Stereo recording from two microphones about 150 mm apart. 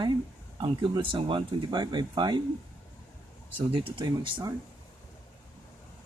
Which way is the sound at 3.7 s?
35° right (ahead or behind).